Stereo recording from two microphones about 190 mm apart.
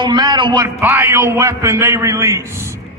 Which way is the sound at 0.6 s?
10° right (ahead or behind).